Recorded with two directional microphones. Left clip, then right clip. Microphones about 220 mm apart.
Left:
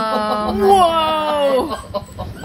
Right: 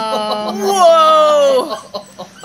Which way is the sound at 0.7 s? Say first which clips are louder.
Right 5 dB; 30° right (ahead or behind).